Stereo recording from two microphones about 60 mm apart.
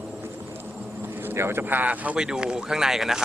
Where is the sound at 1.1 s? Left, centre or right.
Right.